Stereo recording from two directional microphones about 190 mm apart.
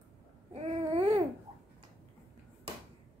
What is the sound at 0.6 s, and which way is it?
Babbling, 30° right (ahead or behind).